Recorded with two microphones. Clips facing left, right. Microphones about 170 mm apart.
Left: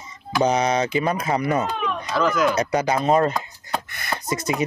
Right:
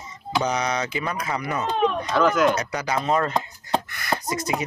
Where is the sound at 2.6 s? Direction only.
25° left (ahead or behind).